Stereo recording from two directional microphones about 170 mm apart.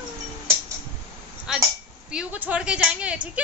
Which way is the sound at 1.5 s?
Centre (ahead or behind).